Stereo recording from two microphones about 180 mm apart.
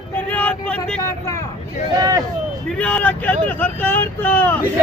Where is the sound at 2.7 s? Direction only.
5° left (ahead or behind).